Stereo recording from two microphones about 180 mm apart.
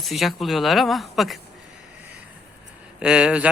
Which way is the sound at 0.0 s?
Centre (ahead or behind).